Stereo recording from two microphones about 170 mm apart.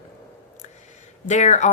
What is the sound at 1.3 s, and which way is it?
Speech, 45° left (ahead or behind).